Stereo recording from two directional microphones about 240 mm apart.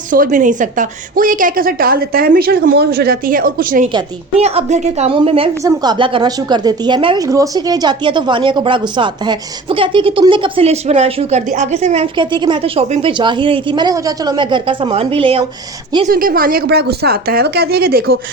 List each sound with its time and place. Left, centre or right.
0.1 s a woman's voice: right
3.9 s a woman's voice: right
16.0 s a woman's voice: right